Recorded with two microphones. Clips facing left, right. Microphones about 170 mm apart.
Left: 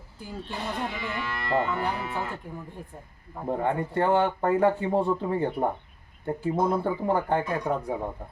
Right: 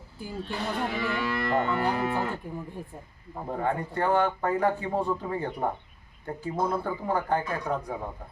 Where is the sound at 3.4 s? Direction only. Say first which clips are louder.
Left 3 dB; 20° left (ahead or behind).